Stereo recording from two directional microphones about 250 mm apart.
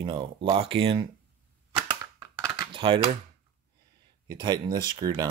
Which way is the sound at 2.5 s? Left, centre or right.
Right.